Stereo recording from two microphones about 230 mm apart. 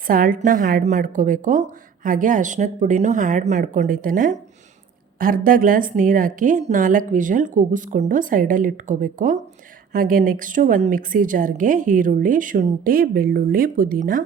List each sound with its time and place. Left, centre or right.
0.1 s speech: right